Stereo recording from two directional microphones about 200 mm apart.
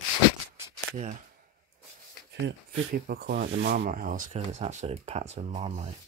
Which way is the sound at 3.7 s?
40° right (ahead or behind).